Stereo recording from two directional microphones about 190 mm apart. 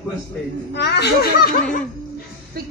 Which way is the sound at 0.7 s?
60° left (ahead or behind).